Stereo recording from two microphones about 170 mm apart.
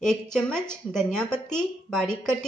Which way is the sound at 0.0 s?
5° left (ahead or behind).